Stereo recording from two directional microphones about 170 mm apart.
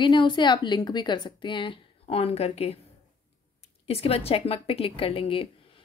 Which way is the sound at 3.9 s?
35° left (ahead or behind).